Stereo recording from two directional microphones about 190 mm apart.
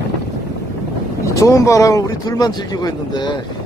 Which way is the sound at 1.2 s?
15° left (ahead or behind).